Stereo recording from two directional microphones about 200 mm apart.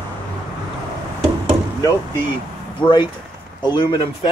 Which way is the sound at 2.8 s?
25° left (ahead or behind).